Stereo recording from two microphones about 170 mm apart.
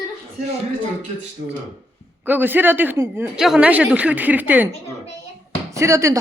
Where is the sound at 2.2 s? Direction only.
10° right (ahead or behind).